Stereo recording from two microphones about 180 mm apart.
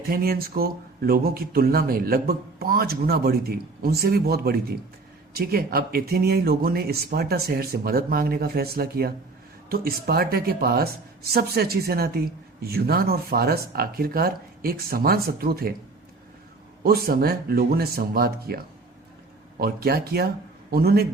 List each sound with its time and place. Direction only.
0.1 s speech: 55° right (ahead or behind)
16.8 s speech: 55° right (ahead or behind)